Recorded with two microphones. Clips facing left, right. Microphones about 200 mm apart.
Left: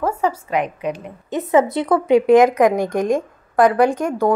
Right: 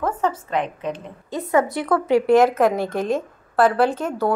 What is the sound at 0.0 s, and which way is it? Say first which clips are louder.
Speech: left 2 dB; 10° left (ahead or behind).